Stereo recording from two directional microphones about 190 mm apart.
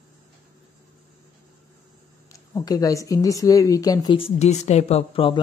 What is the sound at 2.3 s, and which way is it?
Speech, 20° left (ahead or behind).